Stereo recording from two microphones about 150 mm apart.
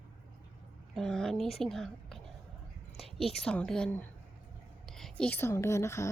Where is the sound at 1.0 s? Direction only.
5° left (ahead or behind).